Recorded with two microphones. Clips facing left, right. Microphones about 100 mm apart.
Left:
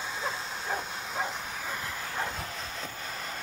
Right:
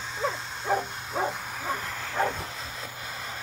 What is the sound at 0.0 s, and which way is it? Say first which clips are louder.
Bow-wow: right 3 dB; centre (ahead or behind).